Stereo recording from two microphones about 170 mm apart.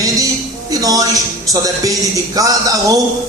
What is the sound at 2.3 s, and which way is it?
Speech, 20° right (ahead or behind).